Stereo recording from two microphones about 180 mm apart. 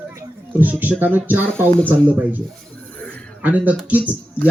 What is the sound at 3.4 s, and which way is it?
Speech, 10° right (ahead or behind).